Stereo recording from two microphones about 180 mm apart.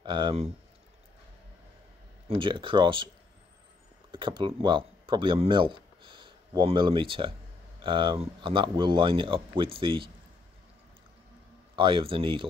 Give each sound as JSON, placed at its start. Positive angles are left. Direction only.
{"t": 0.0, "sound": "speech", "side_deg": -25}
{"t": 2.2, "sound": "speech", "side_deg": -30}
{"t": 4.1, "sound": "speech", "side_deg": -25}
{"t": 11.7, "sound": "speech", "side_deg": -30}